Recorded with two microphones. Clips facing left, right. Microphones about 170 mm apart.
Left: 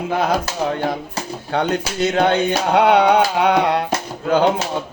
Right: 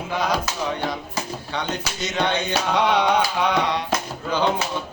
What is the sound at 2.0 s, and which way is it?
Music, 55° left (ahead or behind).